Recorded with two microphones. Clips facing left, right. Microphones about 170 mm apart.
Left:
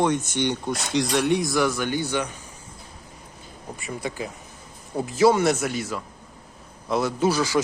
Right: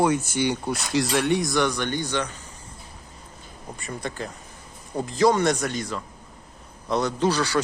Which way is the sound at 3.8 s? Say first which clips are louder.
Left 1 dB; 10° left (ahead or behind).